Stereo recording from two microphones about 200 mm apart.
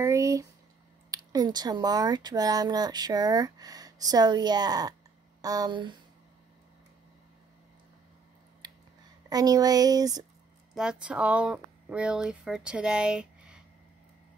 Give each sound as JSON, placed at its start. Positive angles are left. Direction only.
{"t": 0.0, "sound": "speech", "side_deg": -15}
{"t": 9.3, "sound": "speech", "side_deg": -20}
{"t": 10.7, "sound": "speech", "side_deg": -5}